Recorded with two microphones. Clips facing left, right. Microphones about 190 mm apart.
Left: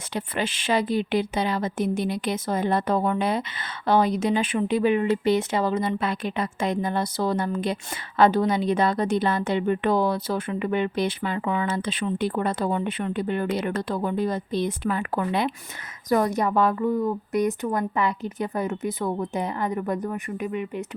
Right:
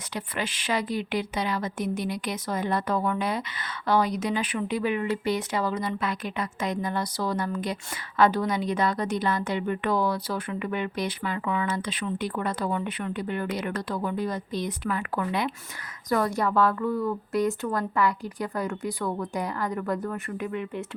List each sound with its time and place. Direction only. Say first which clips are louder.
0.1 s a woman's voice: left 4 dB; 25° left (ahead or behind)